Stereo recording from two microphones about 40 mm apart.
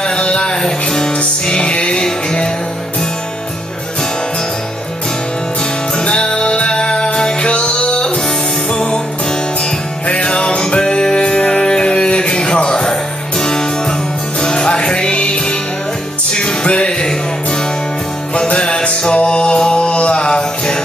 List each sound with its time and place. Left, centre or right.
0.0 s music: left
5.9 s music: left
10.0 s music: left
18.3 s music: left